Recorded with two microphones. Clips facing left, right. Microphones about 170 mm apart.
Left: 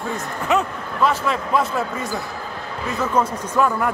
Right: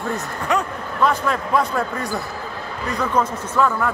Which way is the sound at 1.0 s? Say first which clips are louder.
Even; centre (ahead or behind).